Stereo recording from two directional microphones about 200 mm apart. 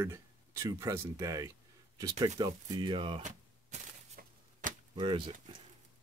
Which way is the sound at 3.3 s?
35° right (ahead or behind).